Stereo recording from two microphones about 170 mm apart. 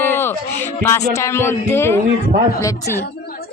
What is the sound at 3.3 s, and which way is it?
Chatter, 65° left (ahead or behind).